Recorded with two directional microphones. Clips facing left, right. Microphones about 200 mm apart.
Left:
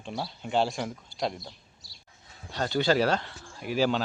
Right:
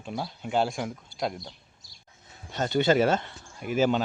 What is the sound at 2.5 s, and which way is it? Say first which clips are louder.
Speech: right 2 dB; 20° right (ahead or behind).